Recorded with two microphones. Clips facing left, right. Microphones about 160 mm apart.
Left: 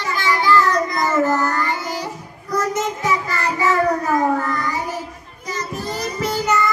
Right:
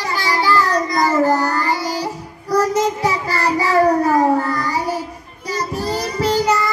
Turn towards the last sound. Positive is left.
turn(degrees=-35)  # may be behind; listen again after turning